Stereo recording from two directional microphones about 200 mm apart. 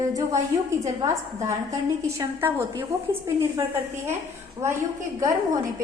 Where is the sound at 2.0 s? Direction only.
15° right (ahead or behind).